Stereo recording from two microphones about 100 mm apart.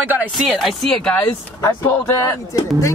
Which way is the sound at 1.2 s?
20° left (ahead or behind).